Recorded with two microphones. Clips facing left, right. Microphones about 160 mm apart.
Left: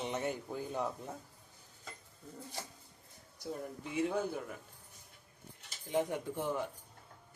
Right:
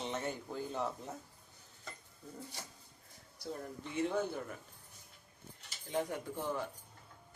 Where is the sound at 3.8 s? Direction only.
10° left (ahead or behind).